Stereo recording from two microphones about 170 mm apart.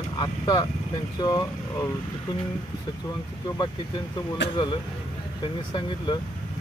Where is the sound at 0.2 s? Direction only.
25° left (ahead or behind).